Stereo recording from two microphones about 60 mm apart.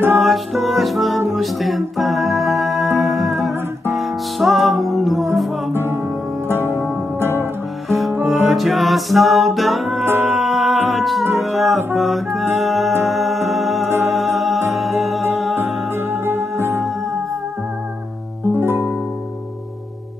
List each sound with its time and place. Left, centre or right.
0.2 s music: centre
5.7 s music: right
6.7 s music: left
7.2 s music: right
7.9 s music: centre
10.0 s music: right
10.4 s a capella: centre
11.3 s music: centre
16.5 s music: right
18.5 s music: right